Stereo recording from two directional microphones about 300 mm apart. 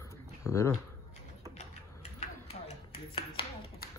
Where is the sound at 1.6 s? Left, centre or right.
Left.